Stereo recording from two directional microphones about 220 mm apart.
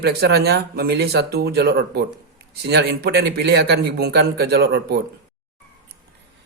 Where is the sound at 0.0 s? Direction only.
45° right (ahead or behind).